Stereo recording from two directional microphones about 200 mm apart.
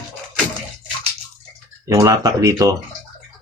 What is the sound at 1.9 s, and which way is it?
Speech, 15° right (ahead or behind).